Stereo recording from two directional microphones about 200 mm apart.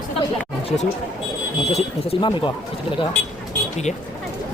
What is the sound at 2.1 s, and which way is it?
Speech, 25° left (ahead or behind).